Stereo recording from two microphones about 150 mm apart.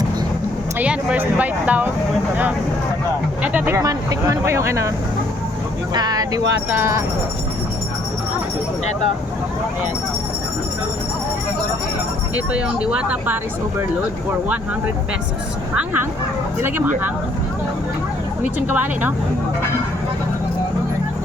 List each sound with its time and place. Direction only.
0.8 s speech: 10° right (ahead or behind)
3.4 s a sound: 10° right (ahead or behind)
3.8 s speech: 25° right (ahead or behind)
5.9 s speech: 25° right (ahead or behind)
12.9 s speech: 10° right (ahead or behind)
15.7 s speech: 10° right (ahead or behind)
18.4 s speech: 10° right (ahead or behind)